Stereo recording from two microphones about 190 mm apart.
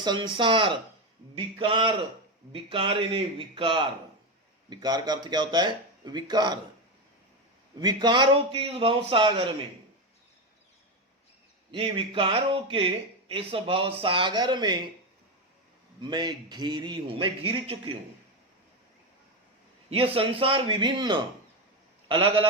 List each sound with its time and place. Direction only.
0.0 s speech: 25° right (ahead or behind)
7.8 s speech: 20° right (ahead or behind)
11.7 s speech: 25° right (ahead or behind)
16.0 s speech: 25° right (ahead or behind)
19.9 s speech: 30° right (ahead or behind)